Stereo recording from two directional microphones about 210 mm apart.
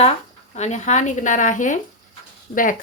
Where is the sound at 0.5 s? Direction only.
35° left (ahead or behind).